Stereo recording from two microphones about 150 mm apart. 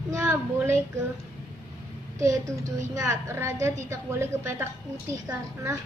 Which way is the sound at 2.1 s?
20° right (ahead or behind).